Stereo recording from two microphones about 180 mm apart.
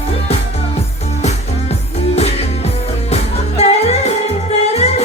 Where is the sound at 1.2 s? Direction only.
35° left (ahead or behind).